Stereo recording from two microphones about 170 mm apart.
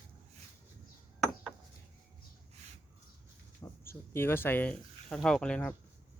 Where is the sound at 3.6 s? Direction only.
20° left (ahead or behind).